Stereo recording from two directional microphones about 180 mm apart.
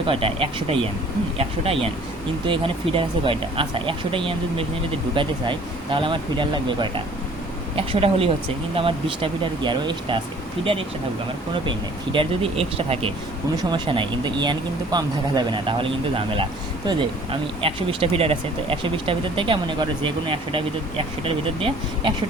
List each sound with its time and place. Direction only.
0.1 s speech: 30° right (ahead or behind)
11.6 s speech: 25° right (ahead or behind)